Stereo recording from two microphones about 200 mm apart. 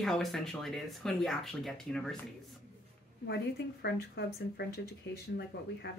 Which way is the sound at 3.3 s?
55° left (ahead or behind).